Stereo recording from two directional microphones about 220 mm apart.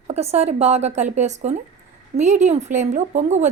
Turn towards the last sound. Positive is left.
turn(degrees=-30)  # may be behind; listen again after turning